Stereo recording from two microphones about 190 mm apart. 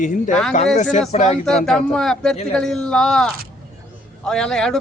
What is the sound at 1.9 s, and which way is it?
Speech, 5° left (ahead or behind).